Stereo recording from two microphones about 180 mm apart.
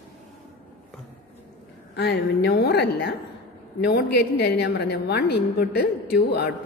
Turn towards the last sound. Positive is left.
turn(degrees=65)  # may be behind; listen again after turning